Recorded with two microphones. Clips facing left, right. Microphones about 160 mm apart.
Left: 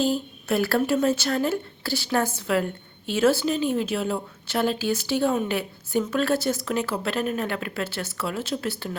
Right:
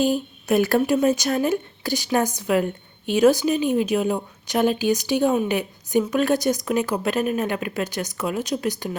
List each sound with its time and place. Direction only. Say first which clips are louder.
0.0 s a woman's voice: right 3 dB; 15° right (ahead or behind)